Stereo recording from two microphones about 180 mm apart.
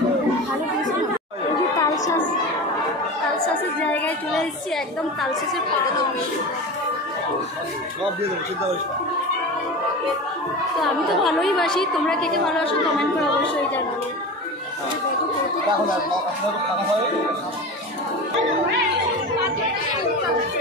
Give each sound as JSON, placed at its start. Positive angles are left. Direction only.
{"t": 1.8, "sound": "chatter", "side_deg": 20}
{"t": 3.8, "sound": "music", "side_deg": 5}
{"t": 10.8, "sound": "a woman's voice", "side_deg": 0}